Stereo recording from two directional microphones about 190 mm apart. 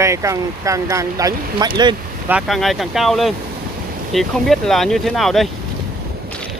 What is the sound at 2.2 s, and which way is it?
Speech, 5° right (ahead or behind).